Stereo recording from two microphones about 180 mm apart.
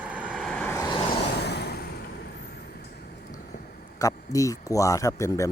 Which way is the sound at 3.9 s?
20° left (ahead or behind).